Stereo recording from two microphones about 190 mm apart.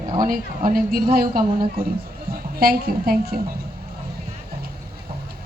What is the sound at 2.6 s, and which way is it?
Speech, 50° right (ahead or behind).